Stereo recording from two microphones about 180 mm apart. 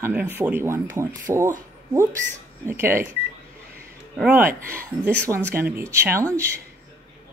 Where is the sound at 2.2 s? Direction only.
90° right.